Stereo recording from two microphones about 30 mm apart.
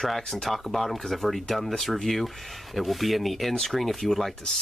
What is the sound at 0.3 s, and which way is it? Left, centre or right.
Speech, centre.